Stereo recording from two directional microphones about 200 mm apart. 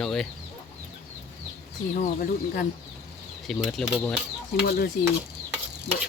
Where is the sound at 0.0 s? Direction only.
5° left (ahead or behind).